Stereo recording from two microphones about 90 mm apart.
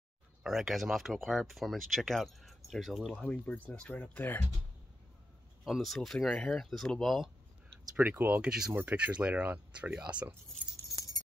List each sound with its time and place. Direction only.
0.4 s speech: 5° right (ahead or behind)
3.2 s speech: 15° left (ahead or behind)
5.6 s speech: centre (ahead or behind)
7.9 s speech: 15° right (ahead or behind)
11.0 s keys jangling: 40° left (ahead or behind)